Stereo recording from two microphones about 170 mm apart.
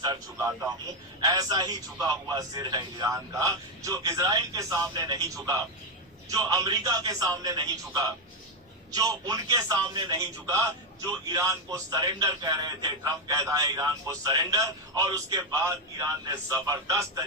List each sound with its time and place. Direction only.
0.0 s a man's voice: 20° right (ahead or behind)